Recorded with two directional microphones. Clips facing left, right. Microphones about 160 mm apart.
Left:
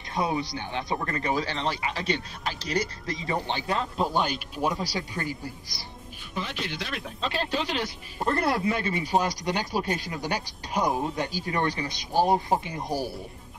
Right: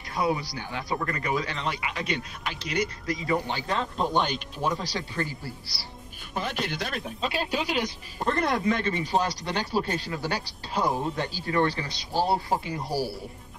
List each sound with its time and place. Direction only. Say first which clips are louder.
0.1 s speech: even; 20° left (ahead or behind)
3.6 s speech: left 1 dB; 5° left (ahead or behind)
6.3 s speech: right 3 dB; 45° right (ahead or behind)
7.2 s speech: left 1 dB; 10° right (ahead or behind)
8.3 s speech: even; 5° left (ahead or behind); by 13.1 s 20° left (ahead or behind)